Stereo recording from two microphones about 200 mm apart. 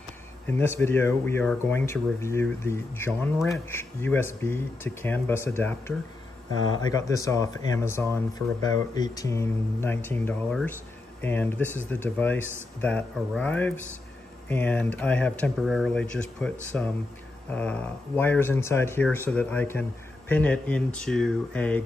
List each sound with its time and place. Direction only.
0.5 s speech: 10° left (ahead or behind)